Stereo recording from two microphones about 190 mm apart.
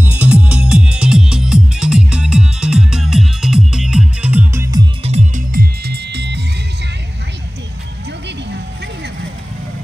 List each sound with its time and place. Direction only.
0.0 s music: 10° right (ahead or behind)
5.0 s music: 35° right (ahead or behind); by 6.4 s 60° right (ahead or behind)